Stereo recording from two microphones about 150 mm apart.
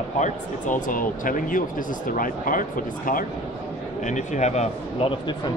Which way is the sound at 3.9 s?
55° left (ahead or behind).